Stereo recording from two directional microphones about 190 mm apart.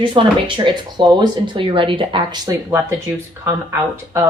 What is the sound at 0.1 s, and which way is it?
Speech, 25° right (ahead or behind).